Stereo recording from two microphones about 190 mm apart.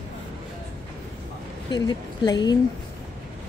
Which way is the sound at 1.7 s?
25° left (ahead or behind).